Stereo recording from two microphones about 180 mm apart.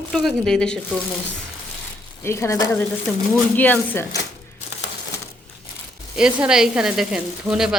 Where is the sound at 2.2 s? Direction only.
15° left (ahead or behind).